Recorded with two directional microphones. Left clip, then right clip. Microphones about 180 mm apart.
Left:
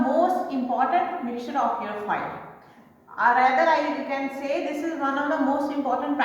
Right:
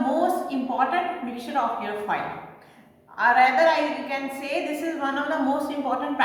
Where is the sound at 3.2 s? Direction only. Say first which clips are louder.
Right 1 dB; 20° right (ahead or behind).